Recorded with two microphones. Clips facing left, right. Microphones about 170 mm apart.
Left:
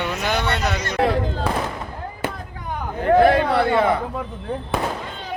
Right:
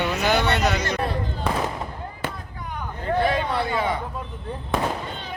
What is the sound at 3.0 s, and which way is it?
Speech, 60° left (ahead or behind).